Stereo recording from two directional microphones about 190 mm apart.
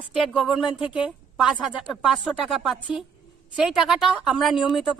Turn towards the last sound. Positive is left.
turn(degrees=0)  # may be behind; listen again after turning